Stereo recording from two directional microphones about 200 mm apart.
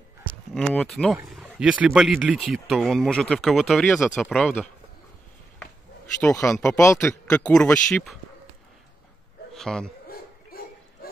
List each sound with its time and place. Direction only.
0.6 s speech: 5° left (ahead or behind)
6.5 s speech: 5° left (ahead or behind)
9.5 s goat: centre (ahead or behind)
10.0 s bow-wow: 50° left (ahead or behind)